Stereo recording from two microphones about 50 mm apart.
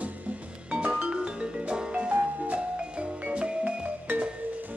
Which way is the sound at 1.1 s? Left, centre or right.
Centre.